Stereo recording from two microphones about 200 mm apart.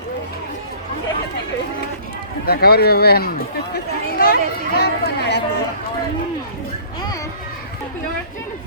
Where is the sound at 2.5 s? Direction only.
50° left (ahead or behind).